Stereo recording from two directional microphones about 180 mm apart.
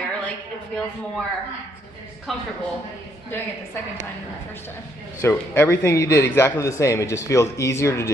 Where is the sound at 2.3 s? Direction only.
Centre (ahead or behind).